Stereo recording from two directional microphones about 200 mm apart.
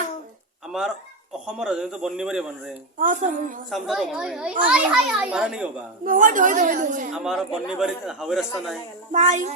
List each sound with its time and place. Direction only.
0.7 s speech: centre (ahead or behind)
3.0 s a woman's voice: 40° right (ahead or behind)
3.7 s speech: centre (ahead or behind)
6.1 s a woman's voice: 40° right (ahead or behind)
7.3 s speech: centre (ahead or behind)
9.1 s a woman's voice: 35° right (ahead or behind)